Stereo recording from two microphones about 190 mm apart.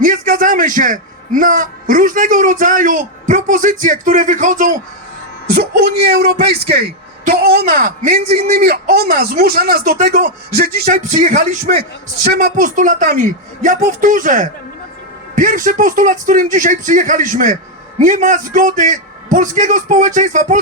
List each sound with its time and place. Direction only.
0.0 s a man's voice: 45° right (ahead or behind)
5.5 s music: 55° right (ahead or behind)
7.3 s speech: 55° right (ahead or behind); by 8.4 s 40° right (ahead or behind)
8.4 s speech: 50° right (ahead or behind)
12.3 s music: 55° right (ahead or behind)
12.5 s a man's voice: 45° right (ahead or behind)